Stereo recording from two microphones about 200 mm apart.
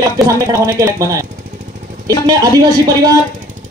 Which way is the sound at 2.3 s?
20° right (ahead or behind).